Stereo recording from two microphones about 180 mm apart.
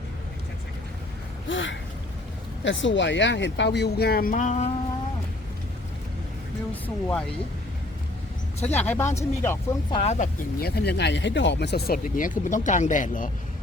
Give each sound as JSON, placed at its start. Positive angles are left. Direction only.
{"t": 1.5, "sound": "gasp", "side_deg": 90}
{"t": 2.6, "sound": "speech", "side_deg": 90}
{"t": 6.8, "sound": "speech", "side_deg": 5}
{"t": 8.6, "sound": "speech", "side_deg": 10}
{"t": 9.9, "sound": "speech", "side_deg": 35}
{"t": 10.6, "sound": "speech", "side_deg": 60}